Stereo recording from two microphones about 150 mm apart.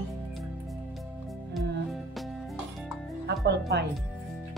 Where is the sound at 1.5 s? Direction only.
Centre (ahead or behind).